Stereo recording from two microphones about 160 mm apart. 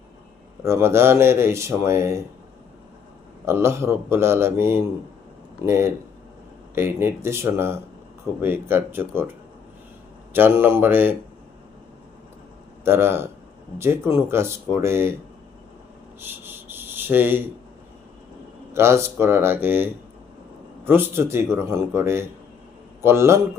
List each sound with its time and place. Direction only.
0.6 s speech: 15° right (ahead or behind)
3.4 s speech: 15° right (ahead or behind)
10.3 s speech: 15° right (ahead or behind)
12.8 s speech: 15° right (ahead or behind)
16.2 s a sound: 15° right (ahead or behind)
18.7 s a man's voice: 15° right (ahead or behind)